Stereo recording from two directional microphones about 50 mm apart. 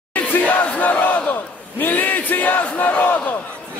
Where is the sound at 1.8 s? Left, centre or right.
Left.